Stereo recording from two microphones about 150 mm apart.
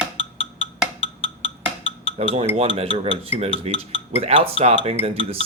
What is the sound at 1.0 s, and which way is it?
Music, 40° left (ahead or behind).